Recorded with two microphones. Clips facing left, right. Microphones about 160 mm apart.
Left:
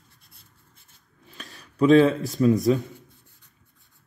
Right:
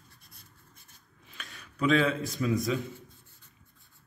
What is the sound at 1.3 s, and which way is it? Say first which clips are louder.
Speech: left 5 dB; 35° left (ahead or behind).